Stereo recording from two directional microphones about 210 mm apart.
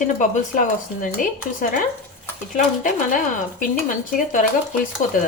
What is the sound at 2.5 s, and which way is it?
Speech, 40° left (ahead or behind).